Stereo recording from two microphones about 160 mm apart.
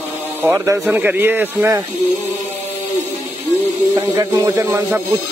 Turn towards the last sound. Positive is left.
turn(degrees=-15)  # may be behind; listen again after turning